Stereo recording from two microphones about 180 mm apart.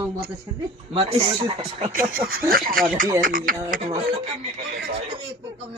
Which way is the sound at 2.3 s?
55° right (ahead or behind).